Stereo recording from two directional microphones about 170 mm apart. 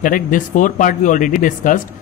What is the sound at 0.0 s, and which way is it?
A man's voice, 50° left (ahead or behind).